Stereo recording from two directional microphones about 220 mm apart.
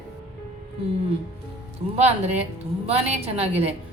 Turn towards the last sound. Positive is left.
turn(degrees=-30)  # may be behind; listen again after turning